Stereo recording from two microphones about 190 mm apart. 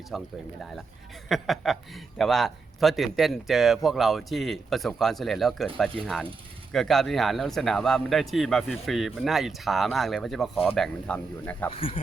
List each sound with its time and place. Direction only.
0.1 s speech: centre (ahead or behind)
1.3 s speech: centre (ahead or behind)
11.7 s speech: 30° left (ahead or behind)